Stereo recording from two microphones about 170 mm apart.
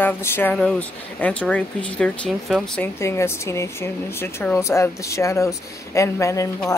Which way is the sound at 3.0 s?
15° left (ahead or behind).